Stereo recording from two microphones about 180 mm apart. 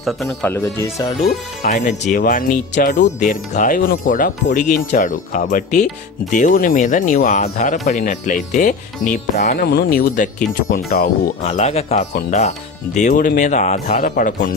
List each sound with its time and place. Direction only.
0.0 s speech: centre (ahead or behind)
0.5 s speech: 15° left (ahead or behind)
1.2 s speech: 50° left (ahead or behind)
9.6 s speech: 60° left (ahead or behind); by 13.9 s 40° left (ahead or behind)
13.9 s speech: 50° left (ahead or behind)